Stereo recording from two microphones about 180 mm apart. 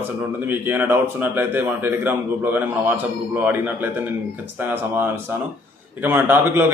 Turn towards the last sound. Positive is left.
turn(degrees=-10)  # may be behind; listen again after turning